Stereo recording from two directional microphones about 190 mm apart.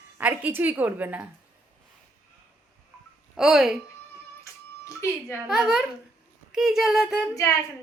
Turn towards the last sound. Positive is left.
turn(degrees=15)  # may be behind; listen again after turning